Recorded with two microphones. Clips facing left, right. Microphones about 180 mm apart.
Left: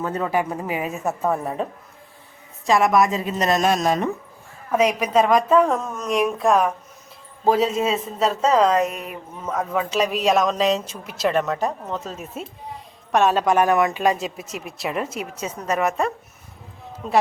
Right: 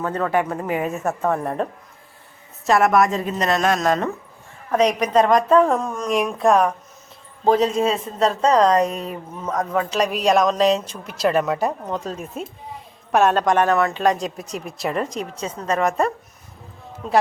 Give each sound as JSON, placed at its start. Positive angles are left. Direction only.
{"t": 0.1, "sound": "speech", "side_deg": 10}
{"t": 2.6, "sound": "speech", "side_deg": 0}
{"t": 3.3, "sound": "speech", "side_deg": 10}
{"t": 8.9, "sound": "speech", "side_deg": -30}
{"t": 9.4, "sound": "speech", "side_deg": 5}